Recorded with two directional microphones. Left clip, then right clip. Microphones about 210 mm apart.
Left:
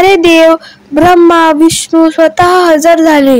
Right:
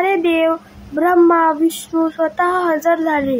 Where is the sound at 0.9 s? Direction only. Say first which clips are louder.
Left 8 dB; 45° left (ahead or behind).